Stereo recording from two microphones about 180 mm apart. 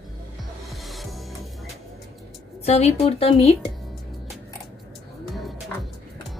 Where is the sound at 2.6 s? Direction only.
35° left (ahead or behind).